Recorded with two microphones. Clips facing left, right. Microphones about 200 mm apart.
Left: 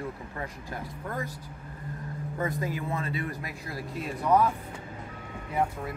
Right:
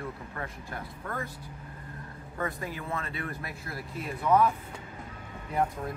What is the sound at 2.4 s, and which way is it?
A man's voice, 20° left (ahead or behind).